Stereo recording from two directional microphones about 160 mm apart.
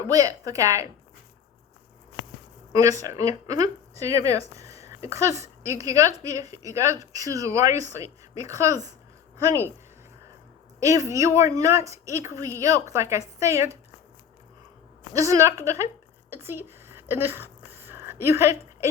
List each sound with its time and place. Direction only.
0.0 s a woman's voice: 20° right (ahead or behind)
2.7 s a woman's voice: 20° right (ahead or behind)
10.8 s a woman's voice: 20° right (ahead or behind)
15.1 s a woman's voice: 20° right (ahead or behind)
16.3 s a sound: 15° right (ahead or behind)